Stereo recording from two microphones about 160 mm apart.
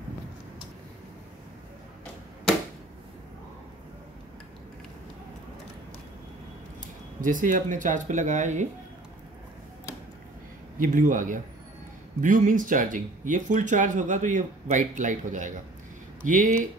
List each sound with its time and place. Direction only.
7.2 s speech: 55° right (ahead or behind)
10.8 s speech: 55° right (ahead or behind)